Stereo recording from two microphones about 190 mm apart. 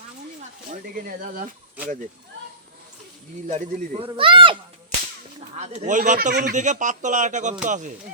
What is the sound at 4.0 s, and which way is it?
Speech, 25° right (ahead or behind).